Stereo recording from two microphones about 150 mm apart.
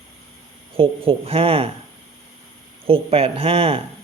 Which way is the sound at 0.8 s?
40° right (ahead or behind).